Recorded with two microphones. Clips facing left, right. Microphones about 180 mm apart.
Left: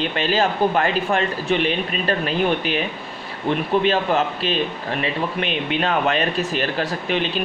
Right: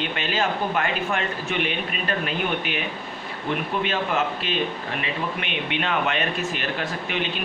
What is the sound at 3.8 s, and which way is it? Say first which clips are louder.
Speech: left 5 dB; 35° left (ahead or behind).